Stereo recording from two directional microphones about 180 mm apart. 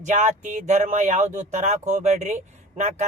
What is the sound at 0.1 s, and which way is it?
Speech, 45° right (ahead or behind).